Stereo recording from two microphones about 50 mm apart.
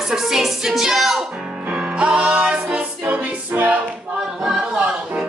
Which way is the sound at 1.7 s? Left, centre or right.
Right.